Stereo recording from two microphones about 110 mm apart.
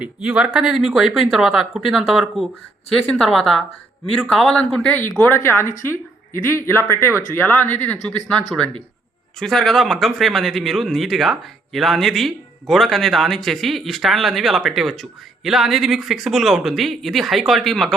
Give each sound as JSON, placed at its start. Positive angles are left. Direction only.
{"t": 0.0, "sound": "speech", "side_deg": -10}